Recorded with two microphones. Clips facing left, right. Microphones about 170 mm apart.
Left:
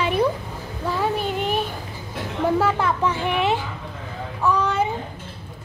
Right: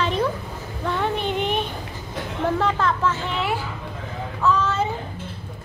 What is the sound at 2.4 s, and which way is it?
A child's voice, 10° left (ahead or behind).